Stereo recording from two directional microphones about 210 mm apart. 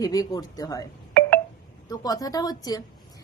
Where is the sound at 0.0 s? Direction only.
15° left (ahead or behind).